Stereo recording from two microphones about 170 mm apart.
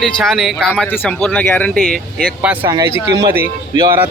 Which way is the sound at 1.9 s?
5° right (ahead or behind).